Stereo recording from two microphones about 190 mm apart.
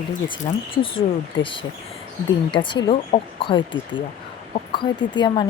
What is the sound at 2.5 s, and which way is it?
Speech, 25° left (ahead or behind).